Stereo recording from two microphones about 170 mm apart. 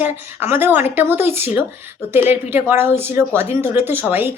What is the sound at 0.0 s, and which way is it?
Speech, 15° right (ahead or behind).